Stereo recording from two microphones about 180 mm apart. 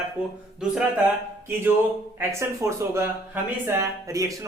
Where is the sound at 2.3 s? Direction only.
15° right (ahead or behind).